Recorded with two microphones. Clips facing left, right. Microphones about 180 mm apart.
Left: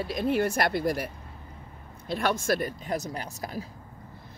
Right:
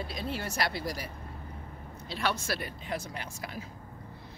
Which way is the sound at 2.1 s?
50° left (ahead or behind).